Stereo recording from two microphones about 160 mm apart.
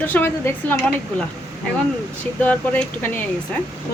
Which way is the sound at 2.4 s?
10° left (ahead or behind).